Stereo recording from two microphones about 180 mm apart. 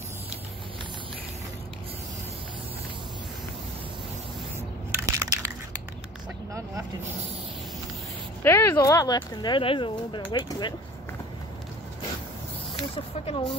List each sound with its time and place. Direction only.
5.0 s crushing: 20° right (ahead or behind)
8.4 s speech: 15° left (ahead or behind)
12.9 s speech: 35° left (ahead or behind)